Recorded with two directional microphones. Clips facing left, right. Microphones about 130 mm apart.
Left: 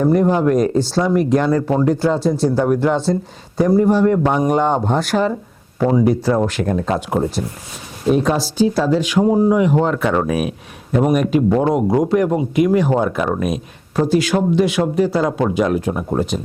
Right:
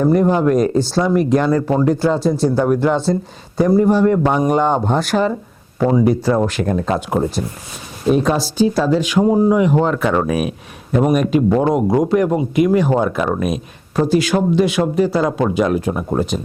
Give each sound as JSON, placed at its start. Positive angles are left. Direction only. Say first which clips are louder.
{"t": 0.0, "sound": "speech", "louder": "right 1 dB", "side_deg": -25}